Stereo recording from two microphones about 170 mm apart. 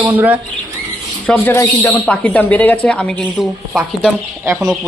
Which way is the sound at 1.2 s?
10° left (ahead or behind).